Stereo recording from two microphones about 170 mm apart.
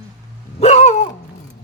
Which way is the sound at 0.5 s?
40° left (ahead or behind).